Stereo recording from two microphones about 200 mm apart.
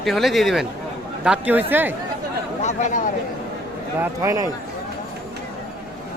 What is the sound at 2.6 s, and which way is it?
Chatter, 35° left (ahead or behind).